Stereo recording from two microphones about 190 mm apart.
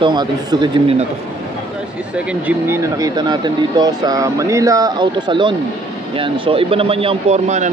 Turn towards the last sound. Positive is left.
turn(degrees=-35)  # may be behind; listen again after turning